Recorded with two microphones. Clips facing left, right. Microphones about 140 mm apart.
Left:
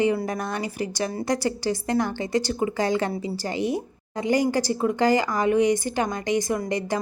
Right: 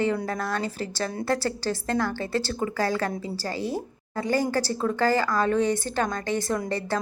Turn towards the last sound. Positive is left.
turn(degrees=15)  # may be behind; listen again after turning